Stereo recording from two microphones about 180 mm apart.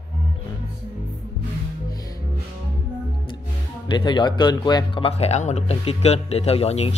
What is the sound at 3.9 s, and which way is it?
Speech, 25° left (ahead or behind).